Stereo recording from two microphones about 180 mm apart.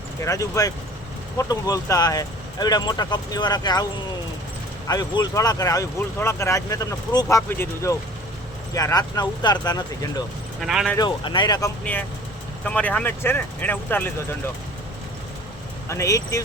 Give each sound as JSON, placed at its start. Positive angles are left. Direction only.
{"t": 0.2, "sound": "speech", "side_deg": 15}
{"t": 4.9, "sound": "speech", "side_deg": 20}
{"t": 10.6, "sound": "speech", "side_deg": 0}
{"t": 10.9, "sound": "speech", "side_deg": 25}
{"t": 12.6, "sound": "speech", "side_deg": 5}
{"t": 15.9, "sound": "speech", "side_deg": 15}